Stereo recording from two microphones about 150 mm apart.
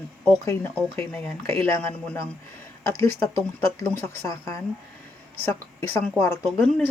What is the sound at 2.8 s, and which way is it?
Speech, 20° left (ahead or behind).